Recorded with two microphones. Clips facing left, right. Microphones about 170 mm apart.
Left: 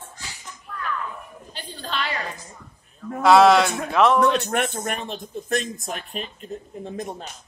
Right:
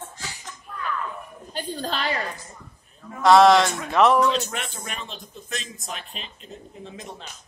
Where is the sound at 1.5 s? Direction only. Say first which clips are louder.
Right 3 dB; 40° right (ahead or behind).